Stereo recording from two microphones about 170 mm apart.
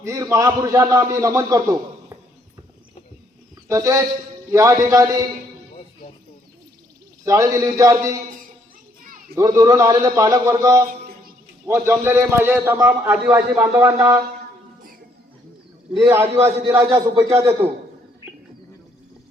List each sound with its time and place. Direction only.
0.0 s a man's voice: 20° right (ahead or behind)
3.7 s a man's voice: 20° right (ahead or behind)
7.3 s a man's voice: 20° right (ahead or behind)
9.3 s a man's voice: 20° right (ahead or behind)
10.8 s a sound: 55° right (ahead or behind)
11.6 s a man's voice: 15° right (ahead or behind)
16.0 s a man's voice: 15° right (ahead or behind)